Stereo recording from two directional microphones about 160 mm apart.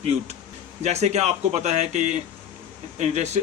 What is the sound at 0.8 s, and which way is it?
Speech, 45° right (ahead or behind).